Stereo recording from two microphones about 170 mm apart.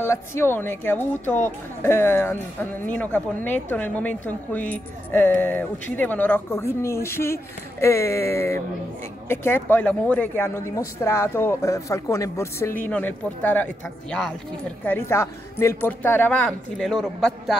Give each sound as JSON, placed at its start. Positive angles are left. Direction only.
{"t": 0.0, "sound": "speech", "side_deg": 15}
{"t": 14.9, "sound": "speech", "side_deg": 15}